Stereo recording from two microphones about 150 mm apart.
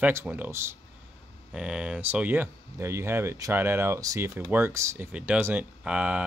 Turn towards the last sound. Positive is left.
turn(degrees=-10)  # may be behind; listen again after turning